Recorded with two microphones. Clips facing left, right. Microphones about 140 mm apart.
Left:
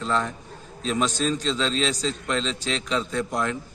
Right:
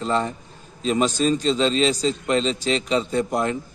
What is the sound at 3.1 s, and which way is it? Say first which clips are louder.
Speech: right 4 dB; 25° right (ahead or behind).